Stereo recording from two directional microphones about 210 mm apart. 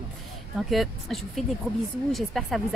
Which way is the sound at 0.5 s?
Centre (ahead or behind).